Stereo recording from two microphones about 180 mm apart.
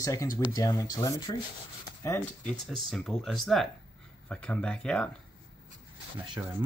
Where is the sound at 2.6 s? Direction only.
Centre (ahead or behind).